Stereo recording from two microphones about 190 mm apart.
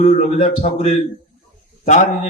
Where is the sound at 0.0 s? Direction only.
35° left (ahead or behind).